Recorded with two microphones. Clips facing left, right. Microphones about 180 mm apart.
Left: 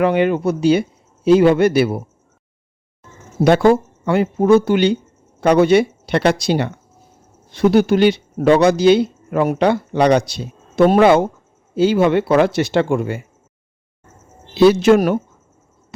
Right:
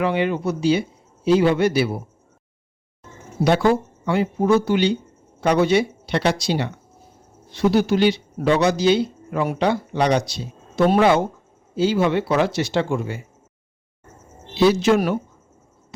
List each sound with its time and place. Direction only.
0.0 s speech: 55° left (ahead or behind)
3.4 s speech: 50° left (ahead or behind)
14.5 s speech: 60° left (ahead or behind)